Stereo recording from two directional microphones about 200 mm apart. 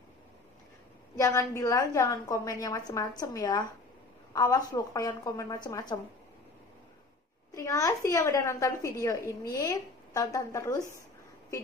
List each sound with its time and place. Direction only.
1.1 s a woman's voice: 15° left (ahead or behind)
7.5 s a woman's voice: 15° left (ahead or behind)